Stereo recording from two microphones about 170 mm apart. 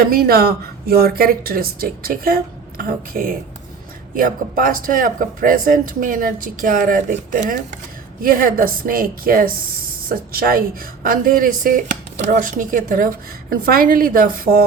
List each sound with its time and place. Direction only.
0.0 s speech: 60° right (ahead or behind)